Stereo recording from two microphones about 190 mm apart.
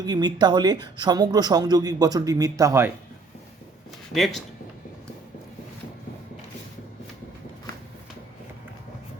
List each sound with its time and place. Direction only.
0.0 s speech: 20° right (ahead or behind)
4.1 s speech: centre (ahead or behind)